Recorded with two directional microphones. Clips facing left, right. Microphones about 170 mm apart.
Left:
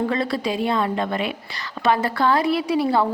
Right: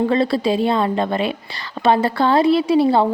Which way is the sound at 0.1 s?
30° right (ahead or behind).